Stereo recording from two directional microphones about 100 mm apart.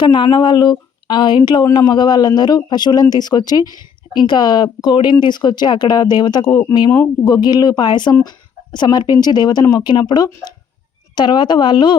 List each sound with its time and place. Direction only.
0.0 s speech: 50° left (ahead or behind)